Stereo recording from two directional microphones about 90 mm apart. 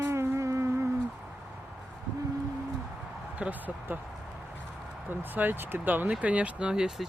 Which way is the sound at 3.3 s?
15° right (ahead or behind).